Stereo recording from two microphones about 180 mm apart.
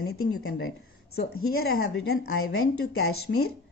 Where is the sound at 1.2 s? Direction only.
60° left (ahead or behind).